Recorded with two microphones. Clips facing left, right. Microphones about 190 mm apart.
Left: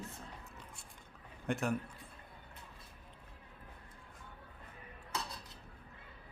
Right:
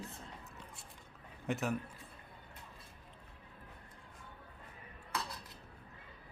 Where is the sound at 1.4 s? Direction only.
Centre (ahead or behind).